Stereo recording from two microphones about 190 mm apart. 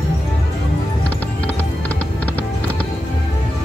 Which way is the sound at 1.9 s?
5° left (ahead or behind).